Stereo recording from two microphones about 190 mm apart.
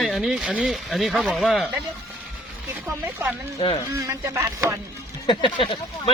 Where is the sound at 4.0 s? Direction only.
15° right (ahead or behind).